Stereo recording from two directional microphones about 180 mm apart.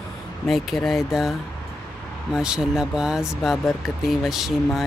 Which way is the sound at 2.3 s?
5° right (ahead or behind).